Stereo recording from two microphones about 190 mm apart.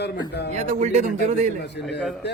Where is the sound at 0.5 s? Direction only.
40° right (ahead or behind).